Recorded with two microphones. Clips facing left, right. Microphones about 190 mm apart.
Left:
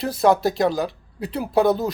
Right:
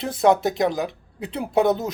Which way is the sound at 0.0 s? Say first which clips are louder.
Left 1 dB; 20° right (ahead or behind).